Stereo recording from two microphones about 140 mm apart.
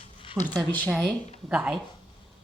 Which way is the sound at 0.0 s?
40° left (ahead or behind).